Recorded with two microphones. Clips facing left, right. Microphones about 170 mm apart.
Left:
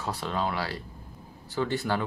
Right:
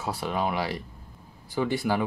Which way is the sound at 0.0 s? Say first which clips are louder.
Right 2 dB; 10° right (ahead or behind).